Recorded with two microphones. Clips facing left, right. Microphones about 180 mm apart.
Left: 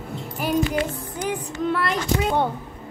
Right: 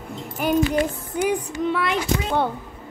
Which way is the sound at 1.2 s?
15° right (ahead or behind).